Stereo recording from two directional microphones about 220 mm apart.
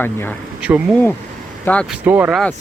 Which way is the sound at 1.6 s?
5° left (ahead or behind).